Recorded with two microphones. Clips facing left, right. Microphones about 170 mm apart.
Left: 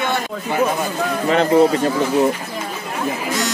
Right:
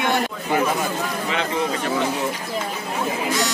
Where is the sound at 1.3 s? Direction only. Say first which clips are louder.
Left 12 dB; 40° left (ahead or behind).